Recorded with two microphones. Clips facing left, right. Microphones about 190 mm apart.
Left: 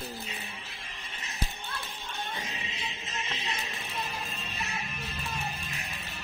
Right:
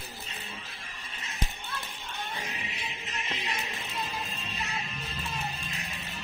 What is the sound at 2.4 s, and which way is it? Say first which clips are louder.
Music: even; 25° left (ahead or behind).